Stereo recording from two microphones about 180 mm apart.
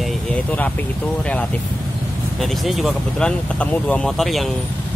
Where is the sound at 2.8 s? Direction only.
5° left (ahead or behind).